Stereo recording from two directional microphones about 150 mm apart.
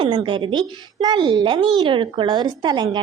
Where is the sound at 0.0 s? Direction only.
35° right (ahead or behind).